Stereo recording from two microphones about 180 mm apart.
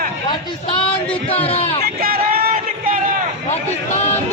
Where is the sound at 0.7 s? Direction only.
30° left (ahead or behind).